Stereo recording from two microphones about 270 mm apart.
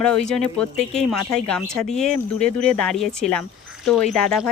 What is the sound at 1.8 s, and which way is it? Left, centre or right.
Speech, centre.